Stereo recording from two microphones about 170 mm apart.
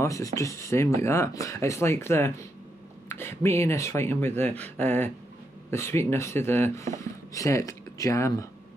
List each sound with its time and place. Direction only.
0.0 s speech: 20° left (ahead or behind)